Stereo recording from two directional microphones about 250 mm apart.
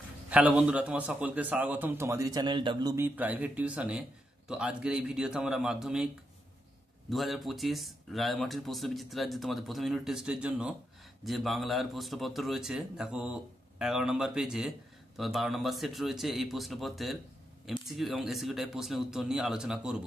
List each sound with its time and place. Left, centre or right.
0.3 s a man's voice: centre
7.1 s speech: centre